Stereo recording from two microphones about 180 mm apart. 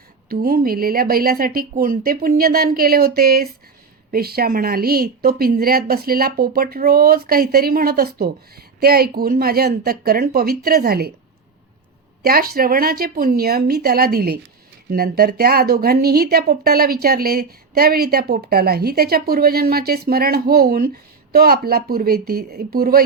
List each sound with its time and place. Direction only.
0.3 s speech: 55° right (ahead or behind)
12.2 s speech: 55° right (ahead or behind)